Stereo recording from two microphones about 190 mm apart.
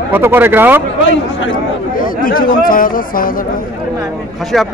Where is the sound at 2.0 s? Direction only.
45° left (ahead or behind).